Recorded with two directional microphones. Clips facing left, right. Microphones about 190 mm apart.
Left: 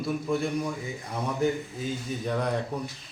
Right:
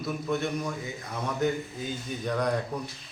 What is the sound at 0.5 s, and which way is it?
A man's voice, 10° left (ahead or behind).